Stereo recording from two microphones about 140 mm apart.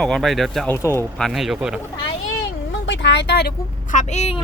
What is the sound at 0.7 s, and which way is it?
Speech, 20° left (ahead or behind).